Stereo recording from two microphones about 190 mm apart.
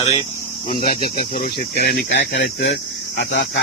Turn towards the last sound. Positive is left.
turn(degrees=60)  # may be behind; listen again after turning